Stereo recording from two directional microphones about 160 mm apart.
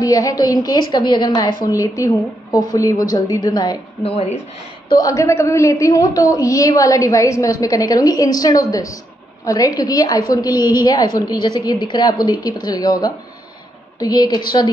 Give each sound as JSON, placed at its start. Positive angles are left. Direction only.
{"t": 0.0, "sound": "a woman's voice", "side_deg": 20}
{"t": 4.0, "sound": "speech", "side_deg": 40}
{"t": 4.8, "sound": "a woman's voice", "side_deg": 25}